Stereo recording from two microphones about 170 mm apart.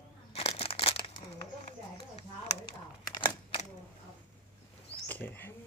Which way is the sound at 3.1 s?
25° left (ahead or behind).